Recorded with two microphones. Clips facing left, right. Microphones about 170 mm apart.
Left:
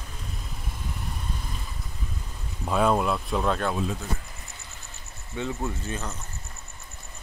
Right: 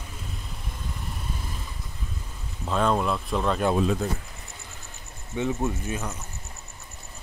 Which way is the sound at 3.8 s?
65° right (ahead or behind).